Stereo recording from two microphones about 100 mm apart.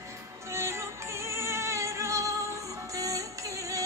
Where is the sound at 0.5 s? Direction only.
25° right (ahead or behind).